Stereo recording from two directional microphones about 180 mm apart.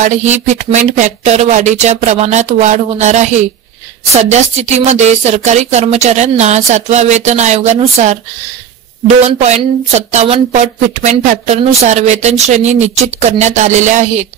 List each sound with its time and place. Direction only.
0.0 s speech: 40° right (ahead or behind)
9.4 s speech: 40° right (ahead or behind)